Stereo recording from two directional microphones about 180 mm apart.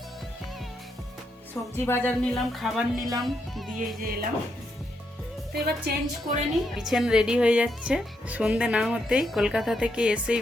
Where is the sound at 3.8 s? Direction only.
55° right (ahead or behind).